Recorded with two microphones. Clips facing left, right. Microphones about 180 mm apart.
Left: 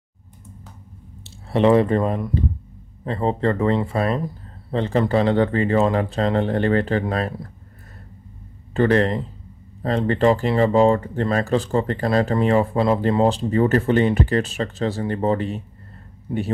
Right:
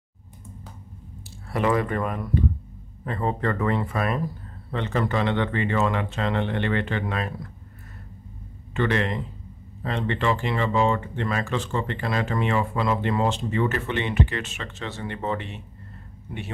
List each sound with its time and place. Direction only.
1.2 s speech: 25° left (ahead or behind)
8.7 s speech: 40° left (ahead or behind)